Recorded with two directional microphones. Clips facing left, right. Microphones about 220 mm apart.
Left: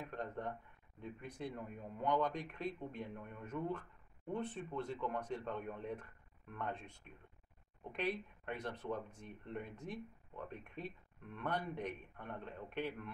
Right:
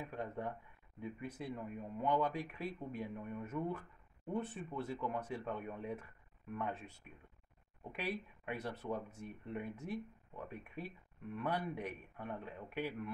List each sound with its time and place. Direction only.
0.0 s speech: 10° right (ahead or behind)